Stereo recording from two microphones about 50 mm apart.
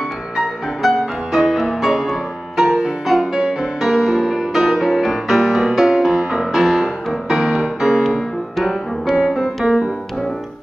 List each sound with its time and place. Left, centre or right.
0.4 s music: centre